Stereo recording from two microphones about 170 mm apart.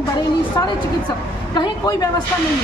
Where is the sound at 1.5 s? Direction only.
25° left (ahead or behind).